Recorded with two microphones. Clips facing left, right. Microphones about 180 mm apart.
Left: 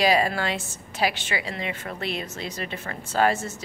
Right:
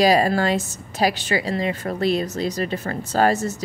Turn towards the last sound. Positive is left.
turn(degrees=-40)  # may be behind; listen again after turning